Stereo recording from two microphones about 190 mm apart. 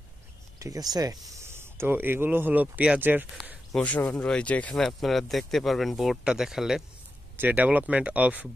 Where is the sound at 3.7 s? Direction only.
5° left (ahead or behind).